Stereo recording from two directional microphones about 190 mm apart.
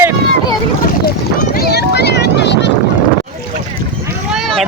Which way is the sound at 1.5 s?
55° left (ahead or behind).